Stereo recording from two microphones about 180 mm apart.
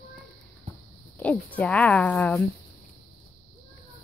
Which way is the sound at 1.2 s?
10° left (ahead or behind).